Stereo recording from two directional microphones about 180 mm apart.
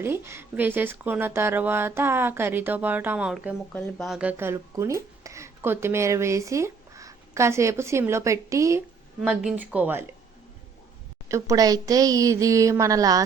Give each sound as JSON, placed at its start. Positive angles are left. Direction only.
{"t": 0.0, "sound": "speech", "side_deg": -15}
{"t": 9.2, "sound": "speech", "side_deg": -5}
{"t": 11.3, "sound": "a woman's voice", "side_deg": -15}